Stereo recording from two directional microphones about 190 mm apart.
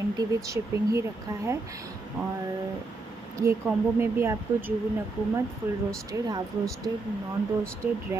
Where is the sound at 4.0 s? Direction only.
10° right (ahead or behind).